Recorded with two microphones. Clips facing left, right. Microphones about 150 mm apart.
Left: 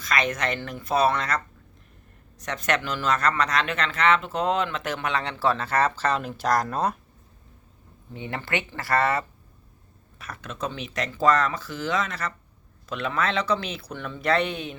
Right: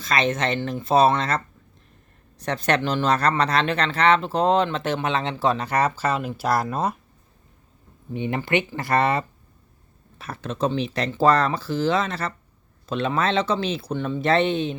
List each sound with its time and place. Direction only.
0.0 s speech: 25° right (ahead or behind)
2.4 s speech: 30° right (ahead or behind); by 6.9 s 5° right (ahead or behind)
8.1 s speech: 20° right (ahead or behind)